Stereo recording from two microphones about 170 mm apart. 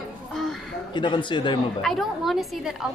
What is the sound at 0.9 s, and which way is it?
Speech, 30° left (ahead or behind).